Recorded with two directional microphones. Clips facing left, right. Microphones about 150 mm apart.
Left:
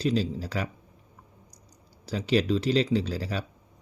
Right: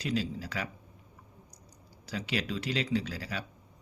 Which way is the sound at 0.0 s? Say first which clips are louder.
Left 6 dB; 35° left (ahead or behind).